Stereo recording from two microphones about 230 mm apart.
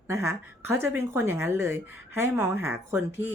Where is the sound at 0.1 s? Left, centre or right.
Centre.